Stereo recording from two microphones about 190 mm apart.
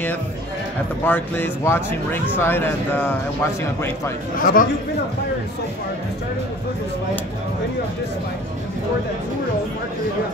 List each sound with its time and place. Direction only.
1.0 s speech: 10° left (ahead or behind)
4.4 s speech: 50° left (ahead or behind)